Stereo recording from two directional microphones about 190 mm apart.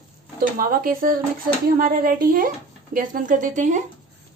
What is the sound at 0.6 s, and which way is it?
A woman's voice, 45° right (ahead or behind).